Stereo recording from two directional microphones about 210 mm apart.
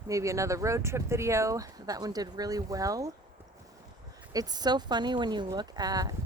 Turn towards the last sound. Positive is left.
turn(degrees=-15)  # may be behind; listen again after turning